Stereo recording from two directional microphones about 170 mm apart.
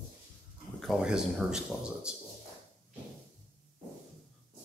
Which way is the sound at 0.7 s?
Centre (ahead or behind).